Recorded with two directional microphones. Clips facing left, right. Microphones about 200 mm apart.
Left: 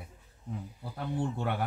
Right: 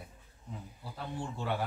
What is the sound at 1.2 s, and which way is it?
Speech, 55° left (ahead or behind).